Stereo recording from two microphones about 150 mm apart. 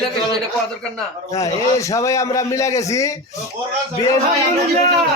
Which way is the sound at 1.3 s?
25° left (ahead or behind).